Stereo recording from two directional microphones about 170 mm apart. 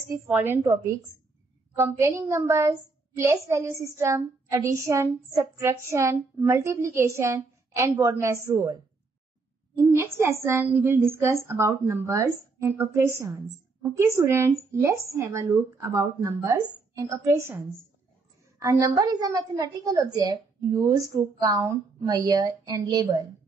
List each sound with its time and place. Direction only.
0.1 s a woman's voice: 15° right (ahead or behind)
9.8 s a woman's voice: 15° right (ahead or behind)